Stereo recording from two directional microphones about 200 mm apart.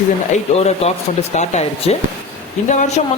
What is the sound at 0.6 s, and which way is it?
Speech, 30° left (ahead or behind).